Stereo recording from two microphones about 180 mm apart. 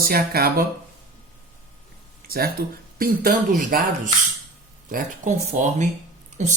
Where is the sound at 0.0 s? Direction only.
55° right (ahead or behind).